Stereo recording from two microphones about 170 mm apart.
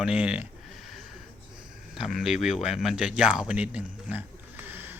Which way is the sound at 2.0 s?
Centre (ahead or behind).